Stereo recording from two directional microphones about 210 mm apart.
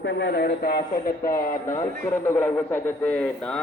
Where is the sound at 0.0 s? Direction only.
55° left (ahead or behind).